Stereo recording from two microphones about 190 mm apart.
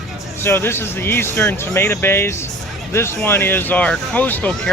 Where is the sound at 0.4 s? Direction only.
15° left (ahead or behind).